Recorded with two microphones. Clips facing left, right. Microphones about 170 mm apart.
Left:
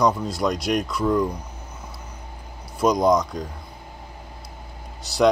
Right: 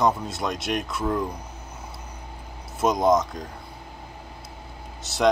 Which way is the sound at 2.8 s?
25° right (ahead or behind).